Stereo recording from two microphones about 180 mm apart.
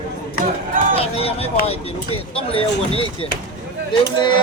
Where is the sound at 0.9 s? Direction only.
35° left (ahead or behind).